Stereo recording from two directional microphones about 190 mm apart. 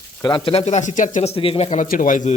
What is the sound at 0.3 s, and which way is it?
Speech, 25° left (ahead or behind).